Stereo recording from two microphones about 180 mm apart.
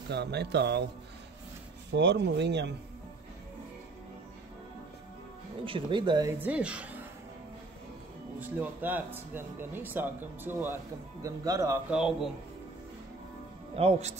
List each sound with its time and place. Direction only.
0.1 s speech: 70° right (ahead or behind)
1.9 s speech: 70° right (ahead or behind)
5.7 s speech: 25° right (ahead or behind)
6.4 s speech: 5° right (ahead or behind)
8.4 s speech: 10° right (ahead or behind)
13.7 s speech: 35° right (ahead or behind)